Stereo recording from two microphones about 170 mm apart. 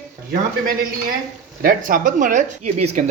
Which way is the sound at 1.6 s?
55° right (ahead or behind).